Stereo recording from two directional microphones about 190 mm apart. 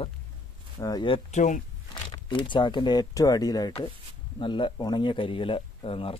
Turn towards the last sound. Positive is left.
turn(degrees=30)  # may be behind; listen again after turning